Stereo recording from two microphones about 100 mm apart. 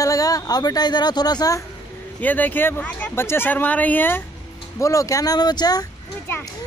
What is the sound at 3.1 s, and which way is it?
Speech, 25° left (ahead or behind).